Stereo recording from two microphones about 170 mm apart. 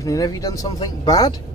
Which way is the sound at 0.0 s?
20° left (ahead or behind).